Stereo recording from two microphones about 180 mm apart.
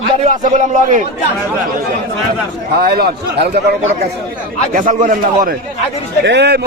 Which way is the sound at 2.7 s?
60° right (ahead or behind).